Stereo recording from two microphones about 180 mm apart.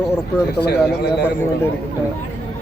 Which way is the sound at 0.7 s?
65° left (ahead or behind).